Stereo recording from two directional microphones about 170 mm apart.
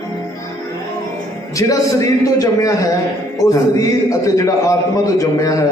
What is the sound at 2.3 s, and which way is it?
A man's voice, 20° left (ahead or behind).